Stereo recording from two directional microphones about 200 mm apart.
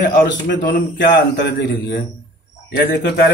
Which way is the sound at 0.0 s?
50° left (ahead or behind).